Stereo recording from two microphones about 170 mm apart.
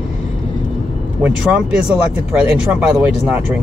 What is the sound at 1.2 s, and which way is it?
Speech, 5° right (ahead or behind).